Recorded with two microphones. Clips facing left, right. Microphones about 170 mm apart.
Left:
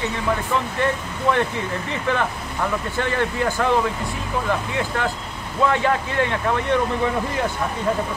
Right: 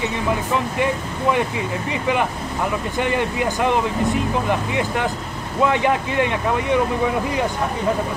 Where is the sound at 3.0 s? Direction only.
15° right (ahead or behind).